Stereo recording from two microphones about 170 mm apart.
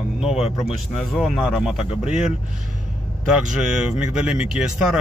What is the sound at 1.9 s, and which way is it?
Speech, 40° left (ahead or behind).